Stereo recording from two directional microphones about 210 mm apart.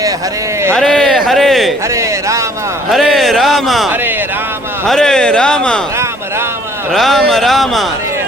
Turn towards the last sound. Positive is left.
turn(degrees=0)  # may be behind; listen again after turning